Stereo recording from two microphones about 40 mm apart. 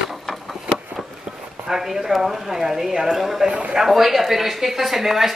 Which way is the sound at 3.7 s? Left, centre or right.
Centre.